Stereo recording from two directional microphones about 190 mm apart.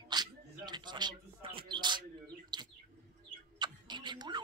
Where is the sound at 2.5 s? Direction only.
20° right (ahead or behind).